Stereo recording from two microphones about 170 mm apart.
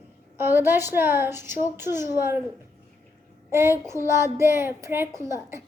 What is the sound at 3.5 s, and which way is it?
Speech, 15° right (ahead or behind).